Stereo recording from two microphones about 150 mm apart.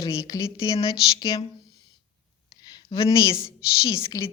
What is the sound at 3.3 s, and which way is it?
Speech, 35° left (ahead or behind).